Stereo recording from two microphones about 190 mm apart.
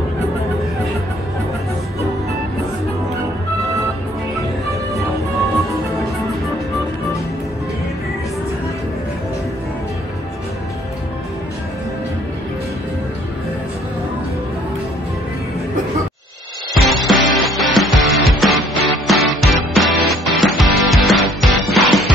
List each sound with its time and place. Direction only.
16.7 s music: centre (ahead or behind)